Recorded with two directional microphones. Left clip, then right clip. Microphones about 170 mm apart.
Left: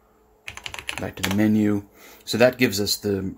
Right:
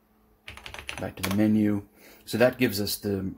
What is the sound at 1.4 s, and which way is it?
Speech, 20° left (ahead or behind).